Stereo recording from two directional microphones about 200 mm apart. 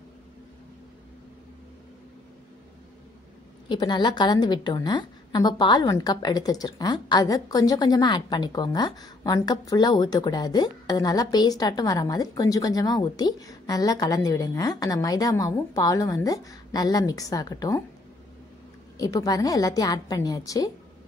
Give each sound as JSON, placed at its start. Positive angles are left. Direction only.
{"t": 3.6, "sound": "a woman's voice", "side_deg": 25}
{"t": 18.9, "sound": "a woman's voice", "side_deg": 20}